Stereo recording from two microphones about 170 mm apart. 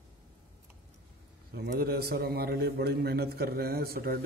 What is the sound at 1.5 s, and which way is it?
A man's voice, 65° right (ahead or behind).